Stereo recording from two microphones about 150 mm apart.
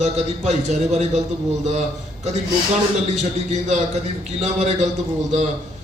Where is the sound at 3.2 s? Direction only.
50° right (ahead or behind).